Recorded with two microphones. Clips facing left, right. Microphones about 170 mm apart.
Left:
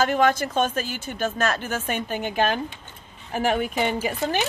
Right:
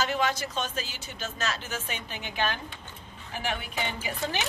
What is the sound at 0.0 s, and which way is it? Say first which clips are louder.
Speech: left 8 dB; 50° left (ahead or behind).